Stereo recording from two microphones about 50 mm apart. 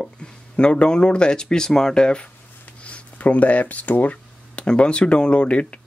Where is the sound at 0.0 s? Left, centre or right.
Centre.